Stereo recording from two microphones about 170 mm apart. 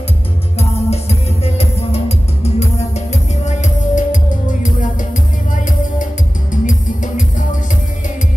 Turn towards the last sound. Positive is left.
turn(degrees=50)  # may be behind; listen again after turning